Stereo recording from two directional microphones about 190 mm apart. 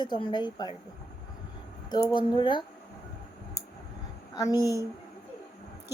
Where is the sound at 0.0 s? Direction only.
25° left (ahead or behind).